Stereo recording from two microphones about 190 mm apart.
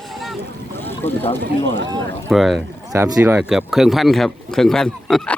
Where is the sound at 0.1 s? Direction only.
Centre (ahead or behind).